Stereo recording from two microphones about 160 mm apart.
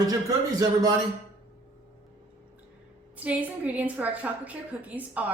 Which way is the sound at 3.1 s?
10° right (ahead or behind).